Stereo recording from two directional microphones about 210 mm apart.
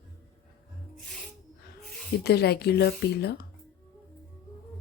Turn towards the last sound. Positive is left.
turn(degrees=50)  # may be behind; listen again after turning